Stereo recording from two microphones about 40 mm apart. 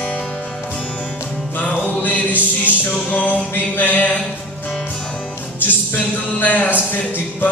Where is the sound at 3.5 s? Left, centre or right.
Left.